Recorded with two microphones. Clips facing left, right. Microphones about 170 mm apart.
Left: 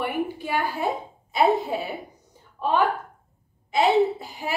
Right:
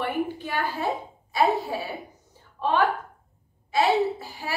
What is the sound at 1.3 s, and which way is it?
Speech, 20° left (ahead or behind).